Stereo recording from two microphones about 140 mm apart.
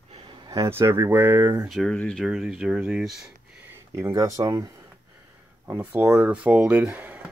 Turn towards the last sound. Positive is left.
turn(degrees=-10)  # may be behind; listen again after turning